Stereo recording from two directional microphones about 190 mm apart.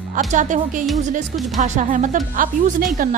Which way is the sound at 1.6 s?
40° right (ahead or behind).